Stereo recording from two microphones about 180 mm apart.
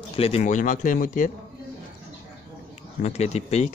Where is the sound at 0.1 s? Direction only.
35° left (ahead or behind).